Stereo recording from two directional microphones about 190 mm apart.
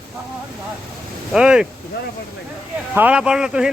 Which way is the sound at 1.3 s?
5° right (ahead or behind).